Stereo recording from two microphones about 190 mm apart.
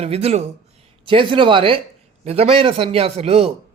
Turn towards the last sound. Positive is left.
turn(degrees=-30)  # may be behind; listen again after turning